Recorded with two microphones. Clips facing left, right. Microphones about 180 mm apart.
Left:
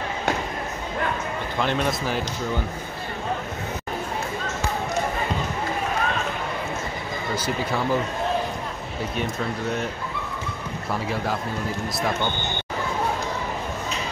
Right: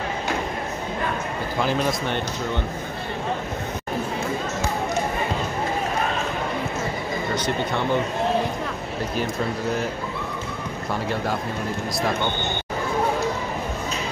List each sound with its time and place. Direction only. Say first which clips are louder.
1.6 s speech: right 1 dB; centre (ahead or behind)
7.4 s speech: left 1 dB; 5° left (ahead or behind)
9.1 s speech: right 2 dB; centre (ahead or behind)